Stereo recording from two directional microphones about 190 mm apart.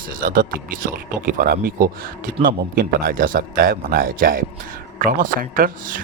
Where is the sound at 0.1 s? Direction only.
45° right (ahead or behind).